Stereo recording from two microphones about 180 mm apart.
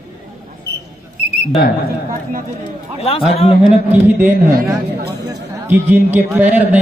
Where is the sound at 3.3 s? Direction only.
30° left (ahead or behind).